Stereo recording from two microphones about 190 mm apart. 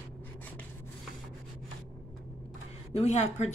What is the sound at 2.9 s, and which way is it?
Speech, 35° left (ahead or behind).